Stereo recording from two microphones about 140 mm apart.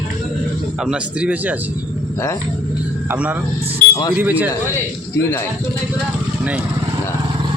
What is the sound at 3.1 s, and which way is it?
Speech, 10° right (ahead or behind).